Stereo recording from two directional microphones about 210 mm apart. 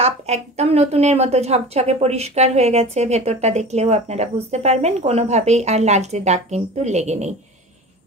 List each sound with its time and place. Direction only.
0.0 s a woman's voice: 30° right (ahead or behind)